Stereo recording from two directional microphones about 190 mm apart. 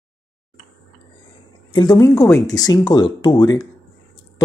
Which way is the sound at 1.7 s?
20° left (ahead or behind).